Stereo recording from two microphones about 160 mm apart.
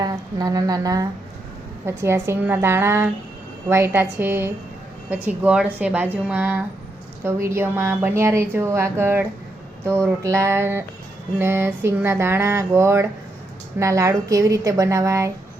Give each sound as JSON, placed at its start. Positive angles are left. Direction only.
{"t": 0.0, "sound": "a woman's voice", "side_deg": -25}